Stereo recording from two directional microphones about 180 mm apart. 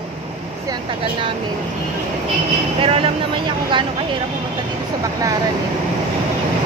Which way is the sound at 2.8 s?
30° right (ahead or behind).